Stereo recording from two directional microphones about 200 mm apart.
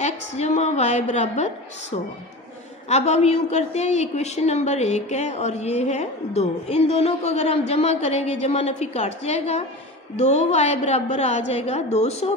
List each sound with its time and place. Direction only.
0.0 s a woman's voice: 35° left (ahead or behind)